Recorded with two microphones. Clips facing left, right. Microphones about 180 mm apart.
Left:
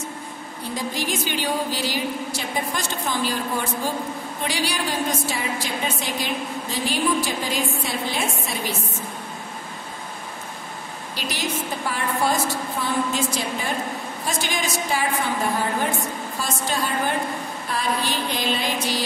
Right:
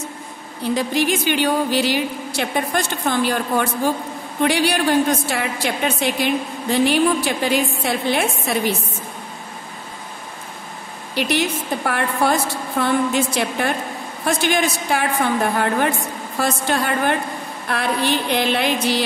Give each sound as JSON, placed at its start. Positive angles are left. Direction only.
{"t": 0.7, "sound": "a woman's voice", "side_deg": -65}
{"t": 11.1, "sound": "a woman's voice", "side_deg": -65}